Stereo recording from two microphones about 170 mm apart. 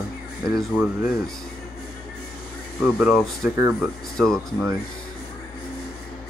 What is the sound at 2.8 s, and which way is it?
Speech, centre (ahead or behind).